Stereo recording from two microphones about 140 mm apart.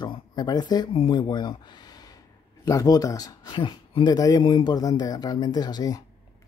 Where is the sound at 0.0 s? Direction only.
30° left (ahead or behind).